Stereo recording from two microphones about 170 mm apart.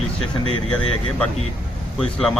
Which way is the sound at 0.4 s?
35° right (ahead or behind).